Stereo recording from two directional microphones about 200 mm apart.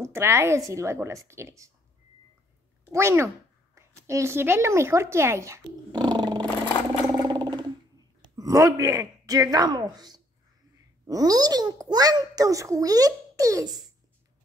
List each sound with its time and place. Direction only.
0.0 s a child's voice: 15° right (ahead or behind)
2.9 s a child's voice: 15° right (ahead or behind)
7.2 s a sound: 20° right (ahead or behind)
11.1 s a child's voice: 20° right (ahead or behind)